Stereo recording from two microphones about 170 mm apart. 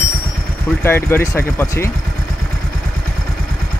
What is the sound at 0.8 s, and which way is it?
Speech, 15° left (ahead or behind).